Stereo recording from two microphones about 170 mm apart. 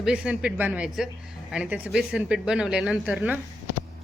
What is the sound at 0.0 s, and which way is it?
A woman's voice, 5° right (ahead or behind).